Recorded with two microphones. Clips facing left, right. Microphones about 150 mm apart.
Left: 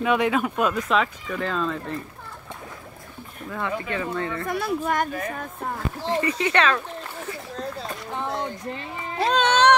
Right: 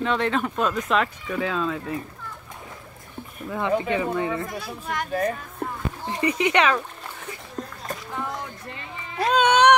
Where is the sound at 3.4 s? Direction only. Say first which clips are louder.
Right 5 dB; 20° right (ahead or behind).